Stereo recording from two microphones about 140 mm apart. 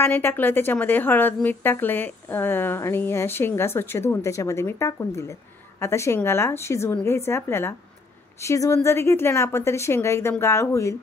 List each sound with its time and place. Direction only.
0.0 s a woman's voice: 15° left (ahead or behind)